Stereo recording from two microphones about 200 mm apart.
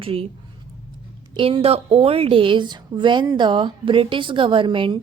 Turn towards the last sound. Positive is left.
turn(degrees=-25)  # may be behind; listen again after turning